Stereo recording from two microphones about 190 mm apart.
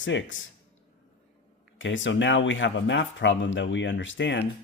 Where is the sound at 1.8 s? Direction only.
80° left.